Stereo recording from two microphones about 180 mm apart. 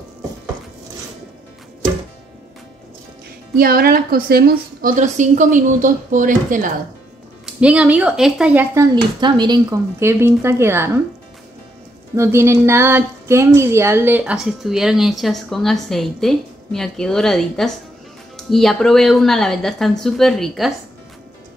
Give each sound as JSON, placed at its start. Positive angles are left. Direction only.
{"t": 3.5, "sound": "a woman's voice", "side_deg": -55}
{"t": 7.4, "sound": "speech", "side_deg": -5}
{"t": 12.2, "sound": "a woman's voice", "side_deg": -15}